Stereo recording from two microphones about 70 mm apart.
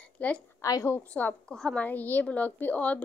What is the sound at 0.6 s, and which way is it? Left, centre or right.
Speech, left.